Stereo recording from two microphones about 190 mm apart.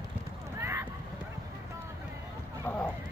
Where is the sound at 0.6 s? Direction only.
15° right (ahead or behind).